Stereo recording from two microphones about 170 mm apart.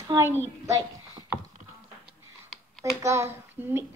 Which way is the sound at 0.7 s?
20° right (ahead or behind).